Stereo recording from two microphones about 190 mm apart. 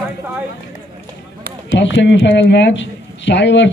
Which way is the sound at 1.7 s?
70° left (ahead or behind).